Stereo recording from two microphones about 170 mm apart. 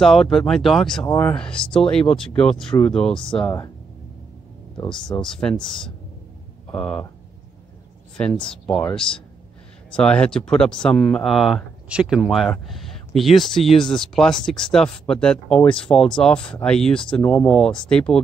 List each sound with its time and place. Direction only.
0.0 s speech: centre (ahead or behind)
3.4 s speech: 25° left (ahead or behind)
4.9 s speech: 5° left (ahead or behind)
8.2 s speech: 5° left (ahead or behind)
9.8 s speech: 5° left (ahead or behind)